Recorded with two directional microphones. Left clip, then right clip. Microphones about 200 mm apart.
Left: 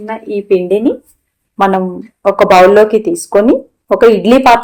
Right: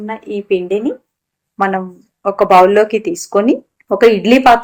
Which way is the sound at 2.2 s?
30° left (ahead or behind).